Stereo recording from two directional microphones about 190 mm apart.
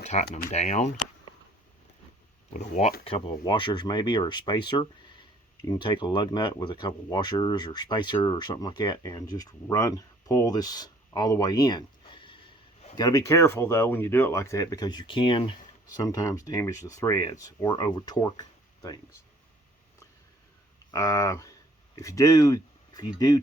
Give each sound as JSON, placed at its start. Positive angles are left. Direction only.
{"t": 0.0, "sound": "speech", "side_deg": 35}
{"t": 2.5, "sound": "speech", "side_deg": 40}
{"t": 20.9, "sound": "speech", "side_deg": 20}